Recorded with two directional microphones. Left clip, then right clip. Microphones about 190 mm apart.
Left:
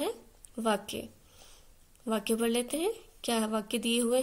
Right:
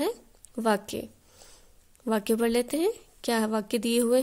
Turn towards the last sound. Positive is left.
turn(degrees=-45)  # may be behind; listen again after turning